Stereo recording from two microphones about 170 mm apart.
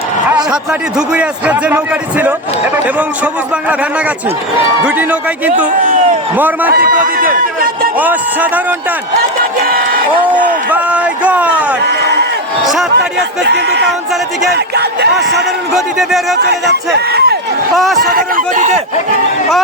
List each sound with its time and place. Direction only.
0.5 s a man's voice: 5° right (ahead or behind)
6.3 s a man's voice: 10° right (ahead or behind)
6.7 s a sound: 60° right (ahead or behind)
7.9 s a man's voice: 10° right (ahead or behind)
9.6 s a sound: 60° right (ahead or behind)
10.7 s a man's voice: 10° right (ahead or behind)
11.8 s a sound: 80° right
13.0 s speech: 80° right
15.7 s speech: centre (ahead or behind)
16.4 s speech: 75° right (ahead or behind)
18.0 s speech: 55° right (ahead or behind)